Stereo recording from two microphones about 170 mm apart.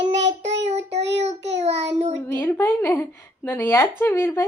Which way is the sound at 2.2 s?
10° left (ahead or behind).